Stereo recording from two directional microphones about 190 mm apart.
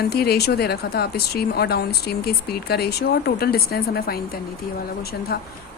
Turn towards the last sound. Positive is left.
turn(degrees=55)  # may be behind; listen again after turning